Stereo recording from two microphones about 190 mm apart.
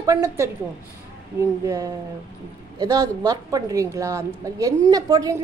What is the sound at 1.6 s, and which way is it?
A woman's voice, 20° right (ahead or behind).